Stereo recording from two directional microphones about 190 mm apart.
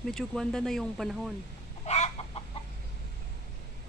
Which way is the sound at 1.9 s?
35° left (ahead or behind).